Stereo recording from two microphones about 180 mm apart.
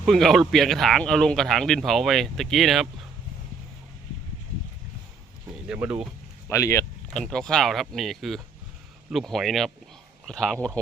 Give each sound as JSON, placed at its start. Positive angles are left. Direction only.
{"t": 0.0, "sound": "speech", "side_deg": 0}
{"t": 5.6, "sound": "speech", "side_deg": -10}
{"t": 6.5, "sound": "speech", "side_deg": 15}
{"t": 7.1, "sound": "speech", "side_deg": 5}